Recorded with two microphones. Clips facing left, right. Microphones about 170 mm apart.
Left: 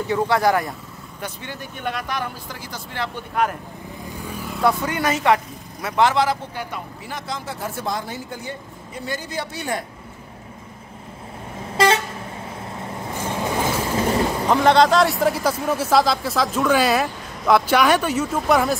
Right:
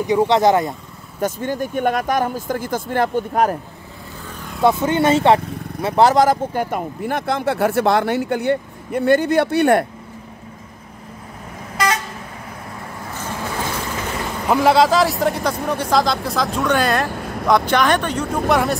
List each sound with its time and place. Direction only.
0.0 s speech: 15° right (ahead or behind)
1.2 s speech: 45° right (ahead or behind)
4.2 s vehicle: 10° left (ahead or behind)
4.6 s speech: 25° right (ahead or behind); by 9.8 s 60° right (ahead or behind)
11.7 s vehicle: 30° left (ahead or behind)
13.2 s vehicle: 20° left (ahead or behind)
13.9 s a sound: 30° left (ahead or behind)
14.5 s speech: 5° right (ahead or behind)
17.1 s vehicle: 60° right (ahead or behind)
17.5 s speech: 5° left (ahead or behind)